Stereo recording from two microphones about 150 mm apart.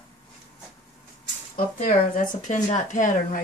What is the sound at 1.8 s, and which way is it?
Speech, 65° left (ahead or behind).